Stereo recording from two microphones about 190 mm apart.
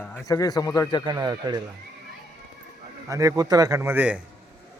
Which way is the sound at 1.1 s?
20° right (ahead or behind).